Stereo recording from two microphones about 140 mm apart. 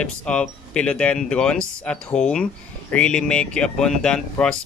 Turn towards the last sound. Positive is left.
turn(degrees=5)  # may be behind; listen again after turning